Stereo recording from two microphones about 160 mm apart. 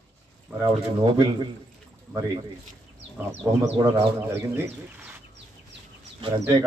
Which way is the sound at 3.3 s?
15° right (ahead or behind).